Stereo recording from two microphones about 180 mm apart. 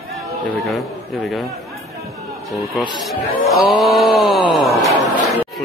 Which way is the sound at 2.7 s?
Centre (ahead or behind).